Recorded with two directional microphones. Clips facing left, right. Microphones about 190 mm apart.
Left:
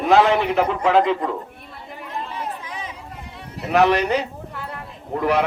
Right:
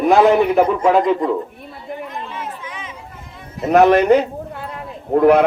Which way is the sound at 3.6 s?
45° right (ahead or behind).